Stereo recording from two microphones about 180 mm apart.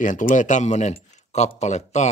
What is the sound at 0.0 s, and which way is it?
Speech, 45° left (ahead or behind).